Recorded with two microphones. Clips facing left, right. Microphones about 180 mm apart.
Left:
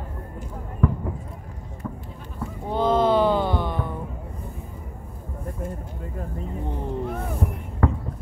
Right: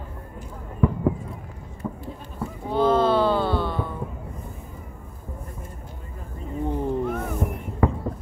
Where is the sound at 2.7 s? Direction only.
15° left (ahead or behind).